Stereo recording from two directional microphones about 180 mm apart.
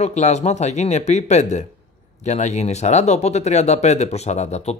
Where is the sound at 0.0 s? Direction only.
40° left (ahead or behind).